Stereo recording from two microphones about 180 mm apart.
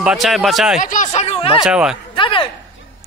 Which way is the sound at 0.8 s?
45° left (ahead or behind).